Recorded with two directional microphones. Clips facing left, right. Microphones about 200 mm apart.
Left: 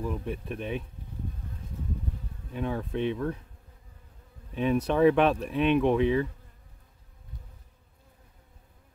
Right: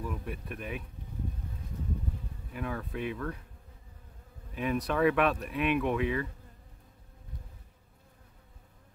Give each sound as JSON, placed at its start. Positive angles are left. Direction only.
{"t": 0.0, "sound": "speech", "side_deg": 25}
{"t": 2.5, "sound": "speech", "side_deg": 25}
{"t": 4.6, "sound": "speech", "side_deg": 25}